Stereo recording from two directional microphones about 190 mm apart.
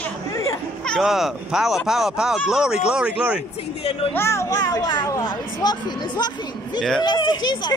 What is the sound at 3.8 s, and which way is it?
Speech, 30° left (ahead or behind).